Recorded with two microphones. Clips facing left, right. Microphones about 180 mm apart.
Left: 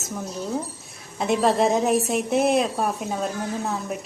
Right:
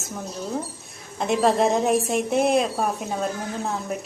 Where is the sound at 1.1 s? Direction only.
Centre (ahead or behind).